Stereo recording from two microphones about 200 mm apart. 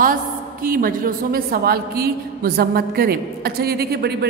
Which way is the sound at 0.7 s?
45° right (ahead or behind).